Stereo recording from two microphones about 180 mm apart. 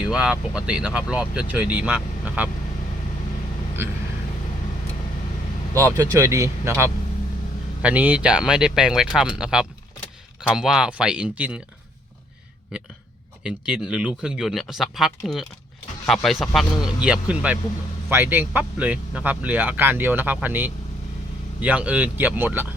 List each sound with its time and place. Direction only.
0.0 s speech: 5° right (ahead or behind)
5.7 s speech: 20° right (ahead or behind)
13.4 s speech: 5° right (ahead or behind)